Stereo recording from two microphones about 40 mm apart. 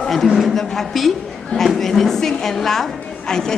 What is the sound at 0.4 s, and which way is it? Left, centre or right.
A man's voice, centre.